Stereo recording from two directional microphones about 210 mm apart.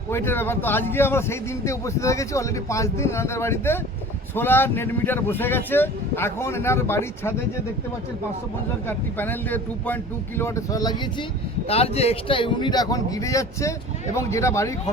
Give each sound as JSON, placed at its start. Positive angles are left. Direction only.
{"t": 0.1, "sound": "a man's voice", "side_deg": 10}
{"t": 8.9, "sound": "a man's voice", "side_deg": 10}
{"t": 11.7, "sound": "a man's voice", "side_deg": 30}